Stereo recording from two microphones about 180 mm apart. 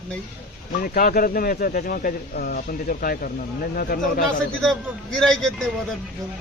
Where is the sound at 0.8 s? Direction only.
55° left (ahead or behind).